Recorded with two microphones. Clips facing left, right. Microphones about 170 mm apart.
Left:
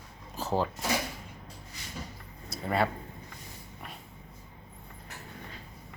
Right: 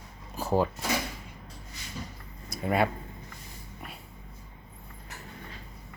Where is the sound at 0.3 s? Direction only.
10° right (ahead or behind).